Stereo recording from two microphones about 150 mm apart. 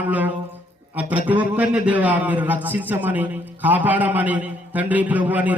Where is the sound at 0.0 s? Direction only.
10° right (ahead or behind).